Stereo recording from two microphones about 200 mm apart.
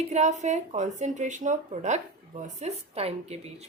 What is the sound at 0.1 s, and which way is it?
Speech, 35° right (ahead or behind).